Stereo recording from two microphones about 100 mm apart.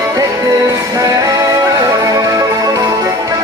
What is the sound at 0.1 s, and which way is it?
Music, 35° right (ahead or behind).